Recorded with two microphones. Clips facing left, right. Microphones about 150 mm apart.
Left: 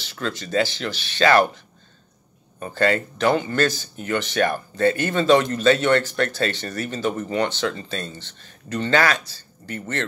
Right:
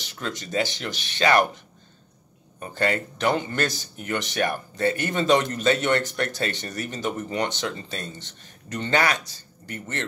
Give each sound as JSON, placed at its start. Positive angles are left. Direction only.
{"t": 0.0, "sound": "a man's voice", "side_deg": -15}
{"t": 2.7, "sound": "a man's voice", "side_deg": -15}